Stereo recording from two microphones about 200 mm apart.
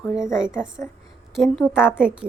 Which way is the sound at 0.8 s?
10° left (ahead or behind).